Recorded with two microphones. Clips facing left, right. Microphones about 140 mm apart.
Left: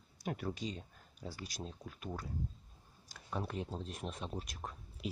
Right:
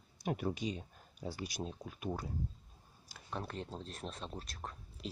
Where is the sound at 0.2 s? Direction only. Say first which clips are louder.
Right 3 dB; 20° right (ahead or behind).